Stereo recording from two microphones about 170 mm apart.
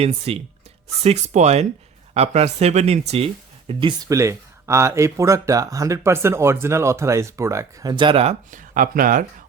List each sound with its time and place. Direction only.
0.0 s speech: 35° right (ahead or behind)
8.4 s speech: 50° right (ahead or behind)